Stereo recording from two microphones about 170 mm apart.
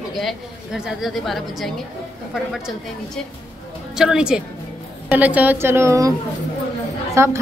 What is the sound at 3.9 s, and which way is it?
A woman's voice, 5° right (ahead or behind).